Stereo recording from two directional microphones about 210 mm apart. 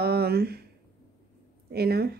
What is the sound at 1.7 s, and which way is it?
Speech, 50° right (ahead or behind).